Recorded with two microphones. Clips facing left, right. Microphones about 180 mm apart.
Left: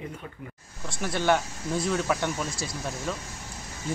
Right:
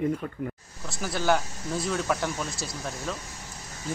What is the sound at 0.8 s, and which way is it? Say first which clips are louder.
Speech: left 1 dB; centre (ahead or behind).